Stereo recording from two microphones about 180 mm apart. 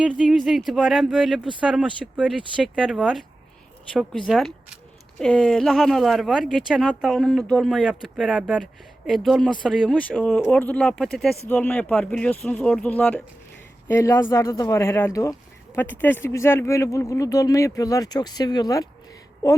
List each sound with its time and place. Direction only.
0.2 s speech: centre (ahead or behind)
4.3 s speech: centre (ahead or behind); by 18.9 s 20° left (ahead or behind)